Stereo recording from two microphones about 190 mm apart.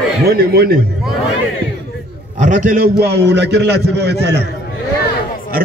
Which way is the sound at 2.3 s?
40° right (ahead or behind).